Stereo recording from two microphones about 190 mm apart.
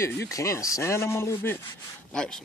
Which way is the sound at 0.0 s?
15° left (ahead or behind).